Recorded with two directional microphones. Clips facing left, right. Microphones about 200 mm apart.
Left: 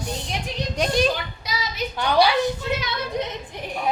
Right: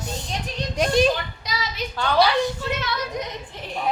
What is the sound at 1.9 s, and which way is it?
Speech, 15° left (ahead or behind).